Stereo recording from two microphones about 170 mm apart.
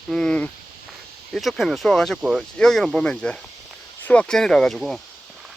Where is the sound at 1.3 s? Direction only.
Centre (ahead or behind).